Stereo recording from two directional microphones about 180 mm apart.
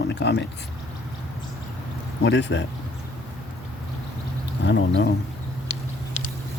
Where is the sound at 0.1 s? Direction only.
75° left (ahead or behind).